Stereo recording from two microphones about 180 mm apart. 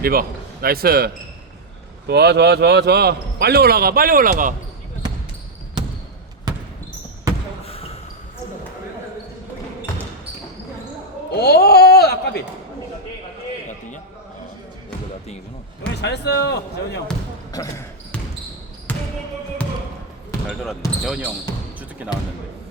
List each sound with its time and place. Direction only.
0.0 s a man's voice: 55° right (ahead or behind)
6.5 s basketball bounce: 20° right (ahead or behind)
7.6 s basketball bounce: 35° left (ahead or behind)
11.3 s speech: 60° left (ahead or behind)
16.0 s speech: 70° left (ahead or behind)
17.5 s speech: 20° left (ahead or behind)
18.9 s basketball bounce: 10° left (ahead or behind)
20.5 s speech: centre (ahead or behind)
21.8 s basketball bounce: 10° right (ahead or behind)